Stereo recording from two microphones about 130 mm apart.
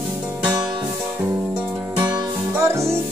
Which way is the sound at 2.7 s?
20° right (ahead or behind).